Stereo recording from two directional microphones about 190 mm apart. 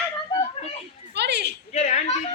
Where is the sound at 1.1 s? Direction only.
65° right (ahead or behind).